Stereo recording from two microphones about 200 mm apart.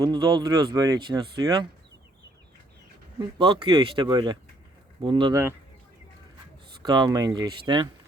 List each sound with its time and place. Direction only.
0.0 s speech: 20° right (ahead or behind)
3.2 s speech: 25° right (ahead or behind)
6.8 s speech: 20° right (ahead or behind)